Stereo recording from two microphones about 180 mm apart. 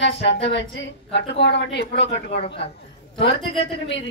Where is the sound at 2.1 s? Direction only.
30° left (ahead or behind).